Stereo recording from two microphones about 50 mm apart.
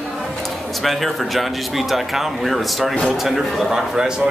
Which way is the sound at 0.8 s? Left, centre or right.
Centre.